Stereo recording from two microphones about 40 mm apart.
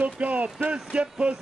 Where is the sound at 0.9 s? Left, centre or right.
Right.